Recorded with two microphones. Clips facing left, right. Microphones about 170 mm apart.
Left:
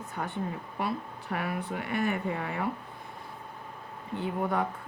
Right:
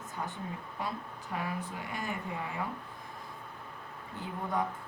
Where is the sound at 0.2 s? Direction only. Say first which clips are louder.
Left 5 dB; 65° left (ahead or behind).